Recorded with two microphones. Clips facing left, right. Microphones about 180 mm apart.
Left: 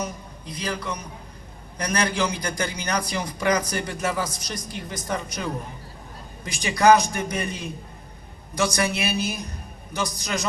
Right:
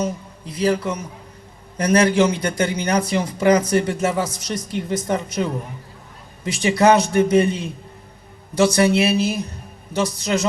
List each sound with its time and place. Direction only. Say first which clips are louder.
0.0 s a man's voice: right 7 dB; 25° right (ahead or behind)